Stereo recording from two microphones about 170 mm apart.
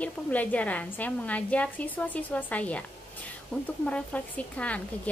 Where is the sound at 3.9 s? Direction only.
5° left (ahead or behind).